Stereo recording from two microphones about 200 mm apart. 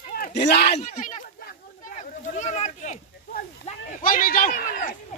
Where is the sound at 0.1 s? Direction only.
50° left (ahead or behind).